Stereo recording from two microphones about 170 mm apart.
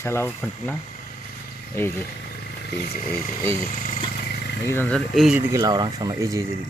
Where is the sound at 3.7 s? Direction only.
55° left (ahead or behind).